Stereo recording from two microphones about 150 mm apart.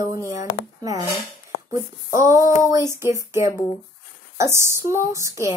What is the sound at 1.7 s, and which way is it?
Speech, 20° right (ahead or behind).